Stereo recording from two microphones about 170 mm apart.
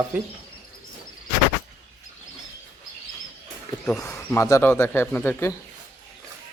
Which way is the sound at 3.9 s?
10° left (ahead or behind).